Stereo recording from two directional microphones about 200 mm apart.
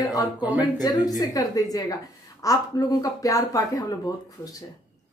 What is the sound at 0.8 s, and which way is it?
Speech, 20° left (ahead or behind).